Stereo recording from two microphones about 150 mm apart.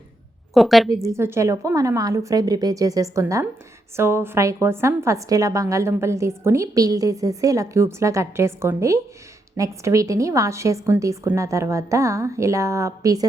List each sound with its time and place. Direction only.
0.5 s a woman's voice: centre (ahead or behind)
1.0 s a woman's voice: 15° right (ahead or behind)